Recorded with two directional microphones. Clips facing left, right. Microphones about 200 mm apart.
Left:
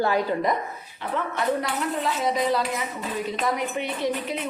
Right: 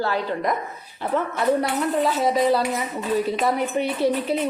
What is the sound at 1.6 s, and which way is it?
A woman's voice, 35° right (ahead or behind).